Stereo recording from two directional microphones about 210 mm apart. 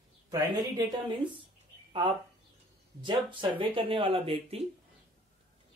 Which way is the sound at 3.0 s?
25° right (ahead or behind).